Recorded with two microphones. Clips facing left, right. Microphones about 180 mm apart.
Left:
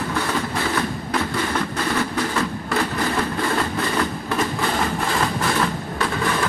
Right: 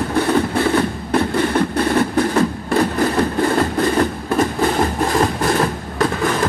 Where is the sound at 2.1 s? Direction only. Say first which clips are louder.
Right 7 dB; 45° right (ahead or behind).